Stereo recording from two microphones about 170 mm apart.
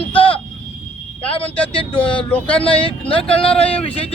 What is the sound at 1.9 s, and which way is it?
Speech, 30° left (ahead or behind).